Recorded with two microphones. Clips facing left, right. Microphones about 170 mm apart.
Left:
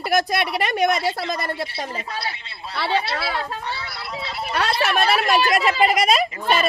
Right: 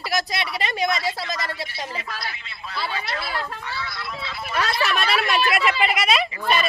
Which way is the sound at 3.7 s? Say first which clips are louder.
Left 1 dB; 35° left (ahead or behind).